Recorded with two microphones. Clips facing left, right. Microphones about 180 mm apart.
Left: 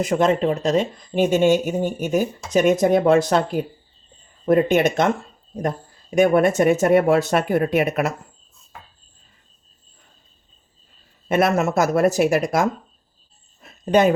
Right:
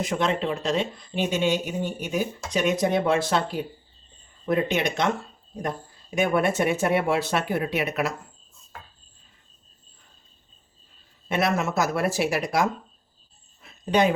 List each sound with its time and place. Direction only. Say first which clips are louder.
0.0 s speech: left 7 dB; 45° left (ahead or behind)
11.3 s speech: left 6 dB; 50° left (ahead or behind)
13.6 s a sound: left 5 dB; 50° left (ahead or behind)